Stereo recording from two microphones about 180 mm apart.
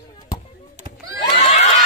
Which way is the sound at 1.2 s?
40° left (ahead or behind).